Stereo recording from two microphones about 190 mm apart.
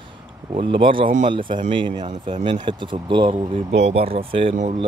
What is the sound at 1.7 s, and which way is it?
Speech, 25° right (ahead or behind).